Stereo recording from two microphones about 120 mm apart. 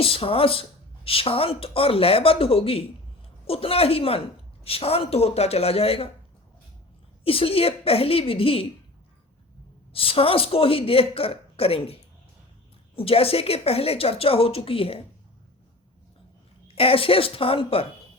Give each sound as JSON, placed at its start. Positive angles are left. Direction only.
{"t": 0.0, "sound": "speech", "side_deg": 50}
{"t": 7.3, "sound": "speech", "side_deg": 50}
{"t": 9.9, "sound": "speech", "side_deg": 50}
{"t": 13.0, "sound": "speech", "side_deg": 50}
{"t": 16.6, "sound": "speech", "side_deg": 50}